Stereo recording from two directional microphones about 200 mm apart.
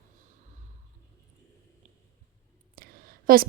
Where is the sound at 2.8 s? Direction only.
45° right (ahead or behind).